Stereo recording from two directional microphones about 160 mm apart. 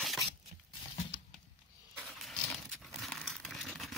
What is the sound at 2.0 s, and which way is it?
Crumpling, centre (ahead or behind).